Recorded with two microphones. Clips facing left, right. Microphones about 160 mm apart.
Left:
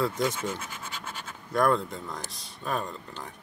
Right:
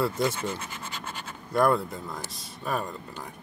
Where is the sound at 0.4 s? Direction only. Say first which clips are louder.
Right 1 dB; 5° left (ahead or behind).